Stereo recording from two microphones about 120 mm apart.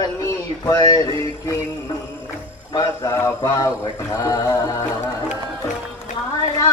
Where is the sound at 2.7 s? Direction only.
25° left (ahead or behind).